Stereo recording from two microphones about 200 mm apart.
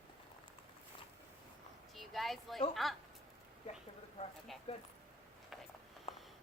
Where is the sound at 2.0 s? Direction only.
Centre (ahead or behind).